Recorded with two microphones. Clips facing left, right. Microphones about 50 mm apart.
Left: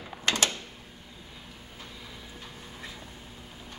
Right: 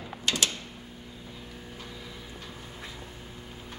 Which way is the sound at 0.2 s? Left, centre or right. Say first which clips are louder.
Left 2 dB; left.